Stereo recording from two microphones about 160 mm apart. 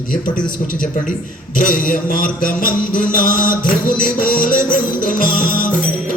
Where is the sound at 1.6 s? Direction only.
60° left (ahead or behind).